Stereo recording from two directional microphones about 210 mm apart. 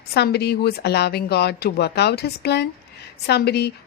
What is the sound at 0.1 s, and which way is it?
Speech, 50° left (ahead or behind).